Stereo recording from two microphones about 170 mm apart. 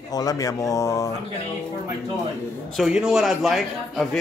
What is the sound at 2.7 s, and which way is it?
Speech, 5° right (ahead or behind).